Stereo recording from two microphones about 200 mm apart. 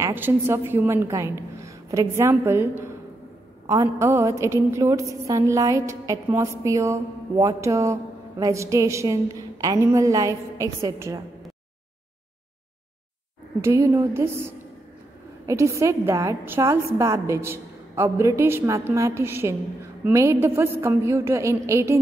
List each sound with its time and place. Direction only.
0.0 s a woman's voice: 10° right (ahead or behind)
13.6 s a woman's voice: 15° right (ahead or behind)